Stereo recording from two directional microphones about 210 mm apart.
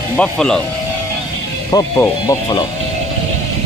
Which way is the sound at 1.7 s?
15° left (ahead or behind).